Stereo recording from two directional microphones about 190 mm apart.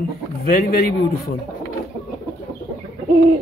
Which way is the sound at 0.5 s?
55° left (ahead or behind).